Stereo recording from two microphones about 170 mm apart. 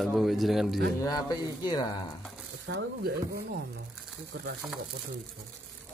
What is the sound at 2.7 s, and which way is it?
Speech, 90° right.